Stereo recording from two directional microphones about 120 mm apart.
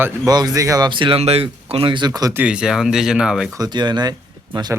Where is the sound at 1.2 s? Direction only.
55° right (ahead or behind); by 2.3 s 35° right (ahead or behind).